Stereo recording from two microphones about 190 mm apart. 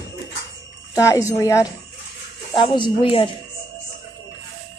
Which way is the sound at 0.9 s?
15° left (ahead or behind).